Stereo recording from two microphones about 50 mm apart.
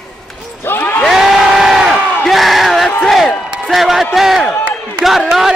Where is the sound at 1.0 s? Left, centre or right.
Centre.